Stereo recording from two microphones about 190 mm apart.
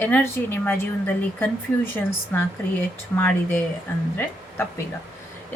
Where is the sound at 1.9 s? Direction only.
10° left (ahead or behind).